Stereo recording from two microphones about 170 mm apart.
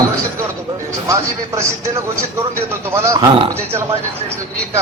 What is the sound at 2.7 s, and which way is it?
A man's voice, 15° right (ahead or behind).